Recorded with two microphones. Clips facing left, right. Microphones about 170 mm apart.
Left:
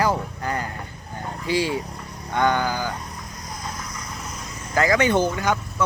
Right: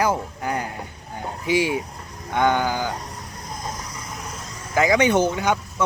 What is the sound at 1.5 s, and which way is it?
Speech, 15° right (ahead or behind).